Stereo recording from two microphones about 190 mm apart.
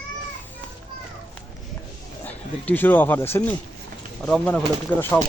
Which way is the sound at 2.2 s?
10° left (ahead or behind).